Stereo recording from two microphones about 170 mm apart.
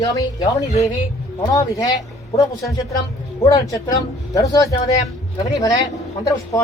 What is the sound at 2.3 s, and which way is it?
Speech, 35° left (ahead or behind).